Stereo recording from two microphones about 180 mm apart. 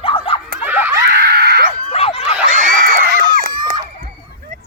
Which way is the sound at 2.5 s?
50° right (ahead or behind).